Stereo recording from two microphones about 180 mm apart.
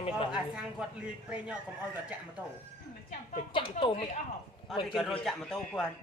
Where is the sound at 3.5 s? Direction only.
30° left (ahead or behind).